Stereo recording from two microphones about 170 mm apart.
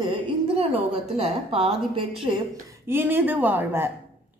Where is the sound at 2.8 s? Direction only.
15° right (ahead or behind).